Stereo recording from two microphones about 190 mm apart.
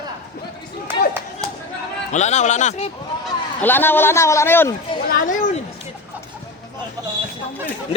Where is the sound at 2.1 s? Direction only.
40° left (ahead or behind).